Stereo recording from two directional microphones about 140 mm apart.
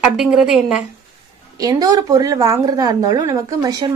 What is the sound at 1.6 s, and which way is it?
Speech, 25° right (ahead or behind).